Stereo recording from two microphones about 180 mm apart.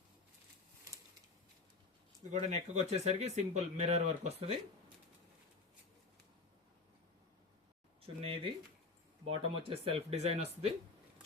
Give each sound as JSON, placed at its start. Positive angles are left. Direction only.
{"t": 2.3, "sound": "speech", "side_deg": -40}
{"t": 8.0, "sound": "a sound", "side_deg": -30}
{"t": 9.2, "sound": "speech", "side_deg": -30}